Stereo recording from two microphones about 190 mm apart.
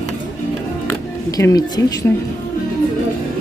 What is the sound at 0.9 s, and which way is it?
Music, 15° left (ahead or behind).